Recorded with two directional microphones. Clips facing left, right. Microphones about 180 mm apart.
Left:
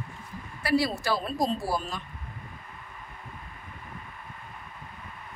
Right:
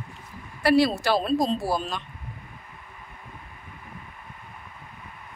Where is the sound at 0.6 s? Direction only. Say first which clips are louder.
Right 6 dB; 75° right (ahead or behind).